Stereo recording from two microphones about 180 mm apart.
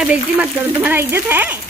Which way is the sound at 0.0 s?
5° right (ahead or behind).